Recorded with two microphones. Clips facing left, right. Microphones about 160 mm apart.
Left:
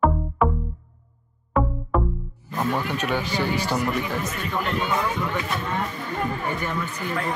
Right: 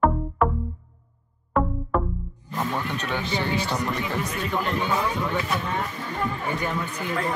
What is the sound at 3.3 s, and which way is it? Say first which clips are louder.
Speech: left 1 dB; 25° right (ahead or behind).